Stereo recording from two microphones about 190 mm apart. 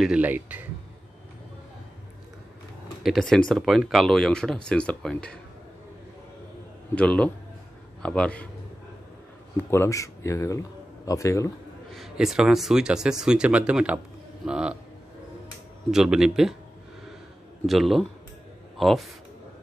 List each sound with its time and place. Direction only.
0.0 s a man's voice: 5° right (ahead or behind)
3.0 s speech: centre (ahead or behind)
7.0 s speech: 5° left (ahead or behind)
9.7 s speech: 15° left (ahead or behind)
11.9 s speech: centre (ahead or behind)
15.9 s speech: 5° right (ahead or behind)
17.6 s speech: centre (ahead or behind)